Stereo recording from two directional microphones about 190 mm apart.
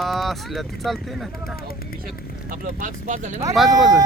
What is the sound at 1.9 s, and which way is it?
Speech, 50° right (ahead or behind).